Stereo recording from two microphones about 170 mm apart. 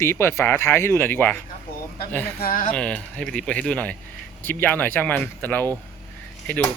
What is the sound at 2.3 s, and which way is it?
Speech, 55° left (ahead or behind).